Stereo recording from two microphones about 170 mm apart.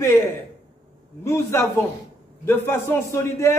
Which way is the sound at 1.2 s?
15° left (ahead or behind).